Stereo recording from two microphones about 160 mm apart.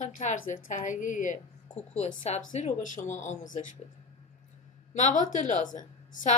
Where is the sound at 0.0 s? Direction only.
50° left (ahead or behind).